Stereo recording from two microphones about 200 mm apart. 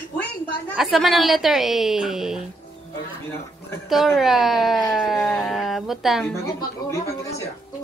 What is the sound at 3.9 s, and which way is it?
Speech, centre (ahead or behind).